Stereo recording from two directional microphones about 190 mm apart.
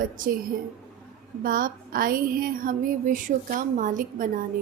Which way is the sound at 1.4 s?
50° right (ahead or behind).